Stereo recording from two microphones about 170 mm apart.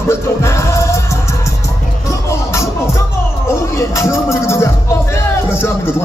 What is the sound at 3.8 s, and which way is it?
Music, 15° left (ahead or behind).